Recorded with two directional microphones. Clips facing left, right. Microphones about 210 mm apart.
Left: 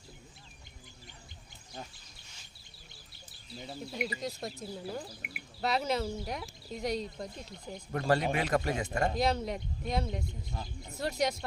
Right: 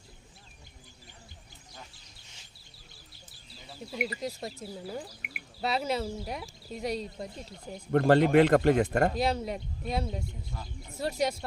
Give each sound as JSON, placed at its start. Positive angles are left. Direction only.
{"t": 3.9, "sound": "speech", "side_deg": -5}
{"t": 7.9, "sound": "speech", "side_deg": -60}
{"t": 9.1, "sound": "speech", "side_deg": -5}